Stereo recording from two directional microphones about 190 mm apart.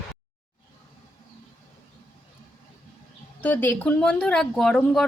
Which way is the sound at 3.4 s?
10° left (ahead or behind).